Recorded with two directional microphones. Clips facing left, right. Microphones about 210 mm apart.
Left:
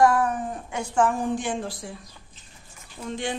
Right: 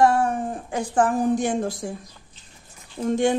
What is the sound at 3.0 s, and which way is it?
Speech, 45° right (ahead or behind).